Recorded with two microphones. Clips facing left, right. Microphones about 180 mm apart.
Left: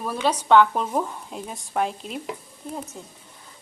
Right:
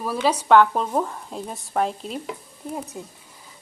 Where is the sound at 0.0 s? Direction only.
5° right (ahead or behind).